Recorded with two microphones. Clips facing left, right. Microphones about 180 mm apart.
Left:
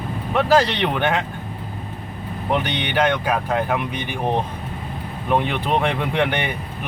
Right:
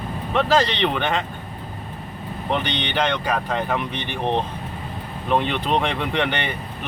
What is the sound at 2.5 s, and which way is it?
Speech, 10° left (ahead or behind).